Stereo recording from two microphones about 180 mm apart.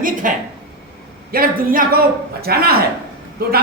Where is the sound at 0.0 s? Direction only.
45° right (ahead or behind).